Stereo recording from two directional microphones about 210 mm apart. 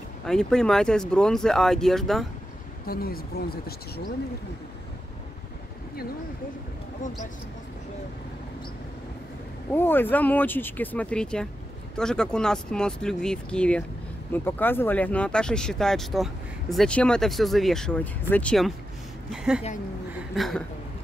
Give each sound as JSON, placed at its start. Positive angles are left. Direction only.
{"t": 0.2, "sound": "speech", "side_deg": 5}
{"t": 2.9, "sound": "speech", "side_deg": 45}
{"t": 9.7, "sound": "speech", "side_deg": 10}